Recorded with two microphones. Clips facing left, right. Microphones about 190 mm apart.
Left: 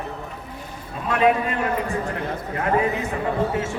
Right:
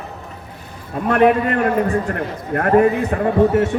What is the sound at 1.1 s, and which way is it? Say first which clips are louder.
A man's voice: right 5 dB; 60° right (ahead or behind).